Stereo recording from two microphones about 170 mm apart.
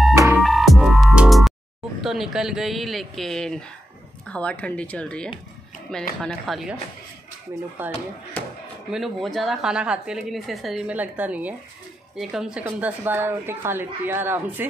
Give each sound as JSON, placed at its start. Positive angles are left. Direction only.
{"t": 0.1, "sound": "music", "side_deg": -15}
{"t": 0.4, "sound": "music", "side_deg": 0}
{"t": 2.0, "sound": "a woman's voice", "side_deg": 0}
{"t": 7.8, "sound": "a woman's voice", "side_deg": -10}